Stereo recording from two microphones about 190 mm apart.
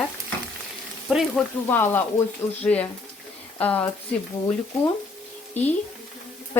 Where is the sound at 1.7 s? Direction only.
10° left (ahead or behind).